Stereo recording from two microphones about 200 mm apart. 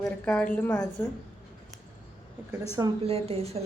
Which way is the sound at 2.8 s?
30° right (ahead or behind).